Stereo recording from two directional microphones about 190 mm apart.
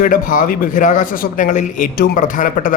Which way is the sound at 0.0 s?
45° left (ahead or behind).